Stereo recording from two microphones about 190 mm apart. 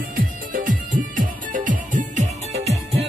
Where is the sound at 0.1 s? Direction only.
45° right (ahead or behind).